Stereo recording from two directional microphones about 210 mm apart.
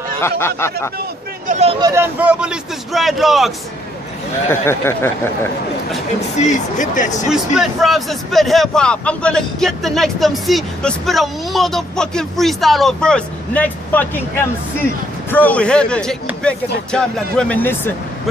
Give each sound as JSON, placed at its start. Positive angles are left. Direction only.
{"t": 0.2, "sound": "speech", "side_deg": 10}
{"t": 1.5, "sound": "speech", "side_deg": -30}
{"t": 1.8, "sound": "a man's voice", "side_deg": -15}
{"t": 4.5, "sound": "speech", "side_deg": 10}
{"t": 6.4, "sound": "speech", "side_deg": 35}
{"t": 7.2, "sound": "a man's voice", "side_deg": 0}